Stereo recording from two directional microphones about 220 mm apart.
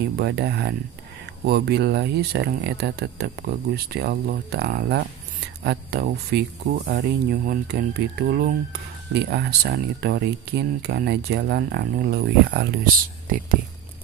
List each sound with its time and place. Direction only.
0.2 s speech: 50° right (ahead or behind)